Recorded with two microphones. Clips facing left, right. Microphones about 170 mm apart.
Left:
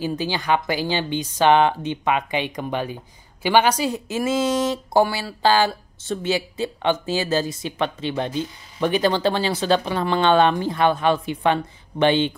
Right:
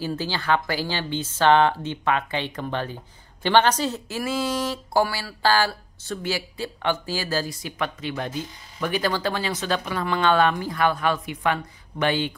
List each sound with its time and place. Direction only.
0.0 s speech: 15° left (ahead or behind)